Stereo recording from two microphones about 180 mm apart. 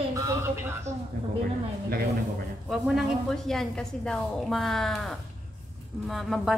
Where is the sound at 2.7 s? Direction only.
Centre (ahead or behind).